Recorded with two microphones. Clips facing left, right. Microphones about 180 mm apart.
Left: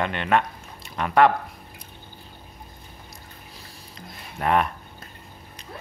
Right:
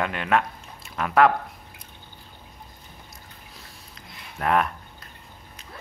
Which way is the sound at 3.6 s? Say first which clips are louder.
Left 3 dB; centre (ahead or behind).